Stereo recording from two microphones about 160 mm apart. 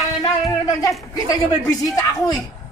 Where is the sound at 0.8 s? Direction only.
20° left (ahead or behind).